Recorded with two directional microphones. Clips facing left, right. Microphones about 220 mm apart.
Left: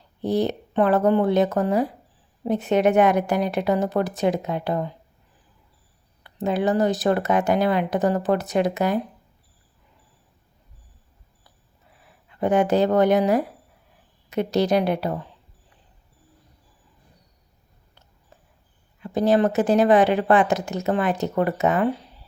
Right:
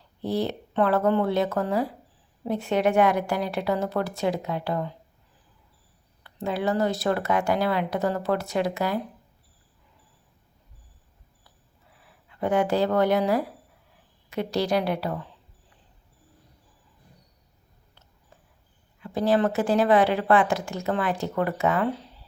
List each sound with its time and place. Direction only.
0.2 s a woman's voice: 20° left (ahead or behind)
6.2 s a woman's voice: 20° left (ahead or behind)
12.4 s a woman's voice: 20° left (ahead or behind)
19.0 s a woman's voice: 20° left (ahead or behind)